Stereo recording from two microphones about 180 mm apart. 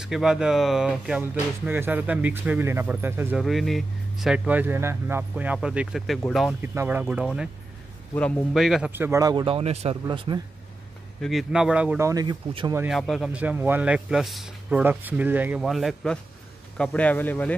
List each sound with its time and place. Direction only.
0.0 s a man's voice: 5° right (ahead or behind)
3.4 s a man's voice: centre (ahead or behind)
6.6 s speech: 10° right (ahead or behind)
8.1 s speech: 10° left (ahead or behind)
8.5 s speech: centre (ahead or behind); by 10.4 s 25° right (ahead or behind)
11.1 s a man's voice: centre (ahead or behind)
12.1 s speech: 20° right (ahead or behind)
12.8 s a man's voice: centre (ahead or behind)